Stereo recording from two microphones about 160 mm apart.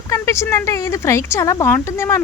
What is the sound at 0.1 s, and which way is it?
Speech, 20° left (ahead or behind).